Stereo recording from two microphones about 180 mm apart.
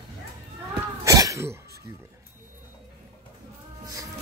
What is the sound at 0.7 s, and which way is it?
Throat clearing, 20° right (ahead or behind).